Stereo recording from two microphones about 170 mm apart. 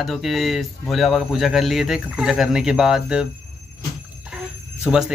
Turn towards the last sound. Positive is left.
turn(degrees=0)  # may be behind; listen again after turning